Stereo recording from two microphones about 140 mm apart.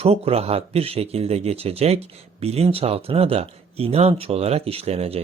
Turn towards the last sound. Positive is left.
turn(degrees=-45)  # may be behind; listen again after turning